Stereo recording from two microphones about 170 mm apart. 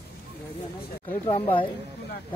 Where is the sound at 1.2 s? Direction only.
35° left (ahead or behind).